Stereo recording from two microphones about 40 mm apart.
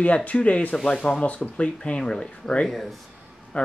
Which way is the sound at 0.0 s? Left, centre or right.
Left.